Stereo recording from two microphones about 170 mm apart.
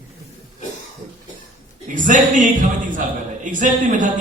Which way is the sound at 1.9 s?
50° right (ahead or behind).